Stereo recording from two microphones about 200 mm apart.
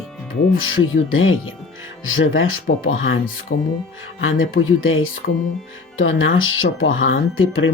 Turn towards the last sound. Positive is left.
turn(degrees=85)